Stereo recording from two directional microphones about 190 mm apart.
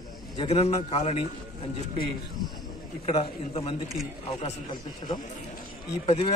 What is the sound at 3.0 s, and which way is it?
A man's voice, 30° left (ahead or behind).